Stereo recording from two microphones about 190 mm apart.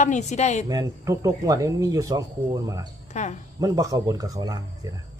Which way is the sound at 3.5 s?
20° right (ahead or behind).